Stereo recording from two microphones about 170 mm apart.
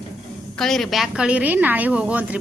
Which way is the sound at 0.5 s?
Centre (ahead or behind).